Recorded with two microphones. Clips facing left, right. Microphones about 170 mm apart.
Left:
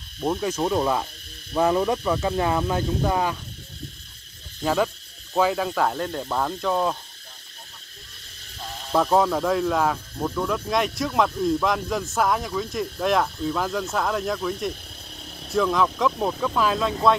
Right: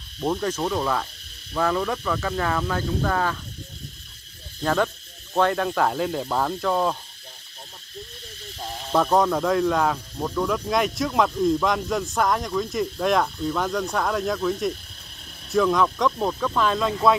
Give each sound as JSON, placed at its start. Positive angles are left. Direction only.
{"t": 0.2, "sound": "cricket", "side_deg": 10}
{"t": 1.5, "sound": "speech", "side_deg": 20}
{"t": 4.6, "sound": "speech", "side_deg": 5}
{"t": 8.9, "sound": "speech", "side_deg": 5}